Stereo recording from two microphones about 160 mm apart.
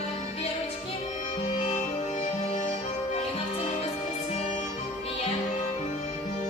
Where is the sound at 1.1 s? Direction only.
50° left (ahead or behind).